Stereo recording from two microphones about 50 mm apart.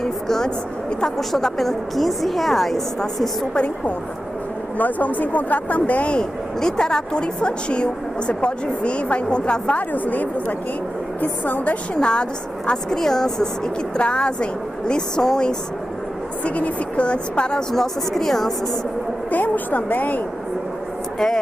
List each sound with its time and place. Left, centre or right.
0.0 s a sound: centre
1.0 s a woman's voice: centre
3.5 s speech: left
9.8 s a woman's voice: left
12.0 s speech: centre
16.4 s speech: left
17.7 s a woman's voice: centre
19.3 s a woman's voice: left